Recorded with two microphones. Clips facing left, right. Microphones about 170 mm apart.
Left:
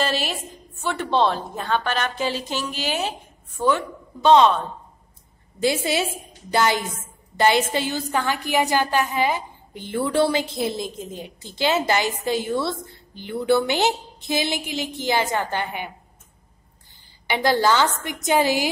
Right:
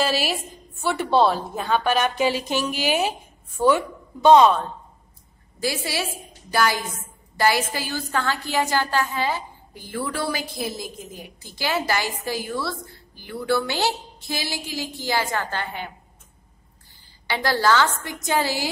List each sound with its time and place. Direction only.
0.0 s a woman's voice: 5° right (ahead or behind)
5.6 s a woman's voice: 20° left (ahead or behind)
17.3 s a woman's voice: 20° left (ahead or behind)